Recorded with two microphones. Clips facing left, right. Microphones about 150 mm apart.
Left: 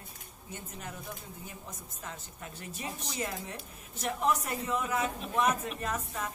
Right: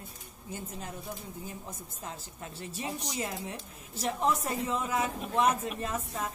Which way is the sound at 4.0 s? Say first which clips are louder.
Right 1 dB; 30° right (ahead or behind).